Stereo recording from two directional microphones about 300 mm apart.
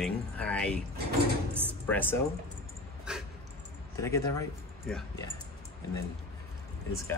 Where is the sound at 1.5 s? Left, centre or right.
Centre.